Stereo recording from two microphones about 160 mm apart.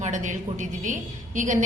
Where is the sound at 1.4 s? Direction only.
50° right (ahead or behind).